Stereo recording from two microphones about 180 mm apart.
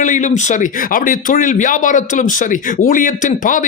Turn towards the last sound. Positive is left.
turn(degrees=45)  # may be behind; listen again after turning